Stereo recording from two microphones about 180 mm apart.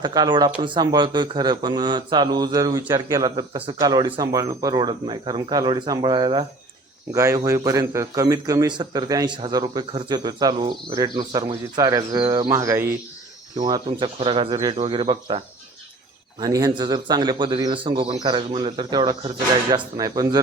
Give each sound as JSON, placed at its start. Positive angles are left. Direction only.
{"t": 0.0, "sound": "speech", "side_deg": -25}